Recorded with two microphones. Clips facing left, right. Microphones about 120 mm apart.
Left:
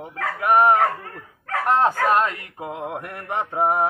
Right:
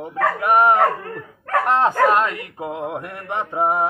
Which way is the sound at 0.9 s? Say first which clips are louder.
Right 6 dB; 60° right (ahead or behind).